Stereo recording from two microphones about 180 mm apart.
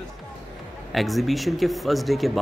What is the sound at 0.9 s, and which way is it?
Speech, centre (ahead or behind).